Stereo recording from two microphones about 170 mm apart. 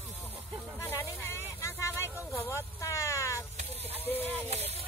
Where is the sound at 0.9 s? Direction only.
15° left (ahead or behind).